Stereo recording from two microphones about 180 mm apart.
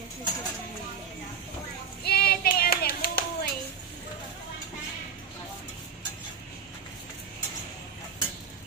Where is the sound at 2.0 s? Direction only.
60° left (ahead or behind).